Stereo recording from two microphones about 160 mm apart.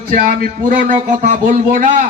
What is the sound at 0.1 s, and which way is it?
A man's voice, 60° right (ahead or behind).